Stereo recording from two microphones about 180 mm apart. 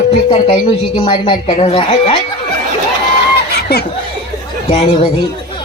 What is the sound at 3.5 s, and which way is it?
Laughter, 65° left (ahead or behind).